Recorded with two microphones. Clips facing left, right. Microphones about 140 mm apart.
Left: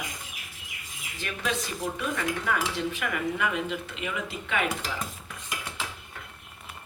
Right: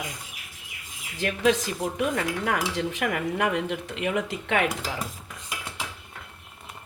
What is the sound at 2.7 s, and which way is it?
Speech, 90° right.